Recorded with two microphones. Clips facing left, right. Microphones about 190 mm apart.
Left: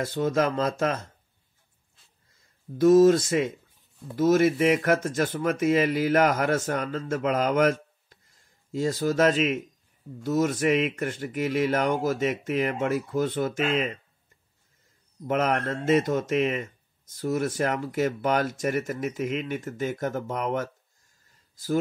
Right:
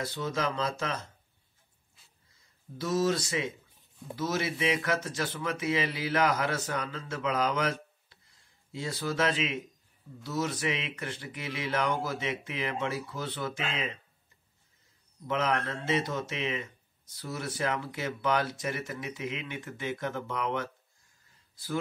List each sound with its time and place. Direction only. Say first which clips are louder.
0.0 s speech: left 8 dB; 50° left (ahead or behind)
2.8 s speech: left 12 dB; 50° left (ahead or behind)
15.2 s speech: left 5 dB; 50° left (ahead or behind)